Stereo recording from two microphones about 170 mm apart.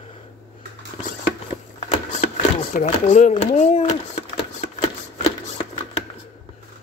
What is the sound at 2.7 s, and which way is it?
Speech, 45° left (ahead or behind).